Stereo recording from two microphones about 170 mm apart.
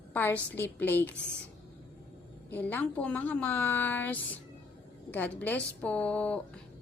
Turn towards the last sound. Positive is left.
turn(degrees=5)  # may be behind; listen again after turning